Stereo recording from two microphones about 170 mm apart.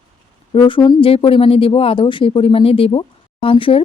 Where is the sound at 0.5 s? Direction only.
25° left (ahead or behind).